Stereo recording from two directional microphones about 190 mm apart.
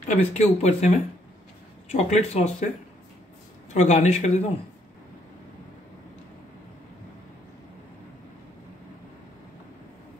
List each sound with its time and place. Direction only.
0.1 s speech: 35° left (ahead or behind)
3.7 s speech: 35° left (ahead or behind)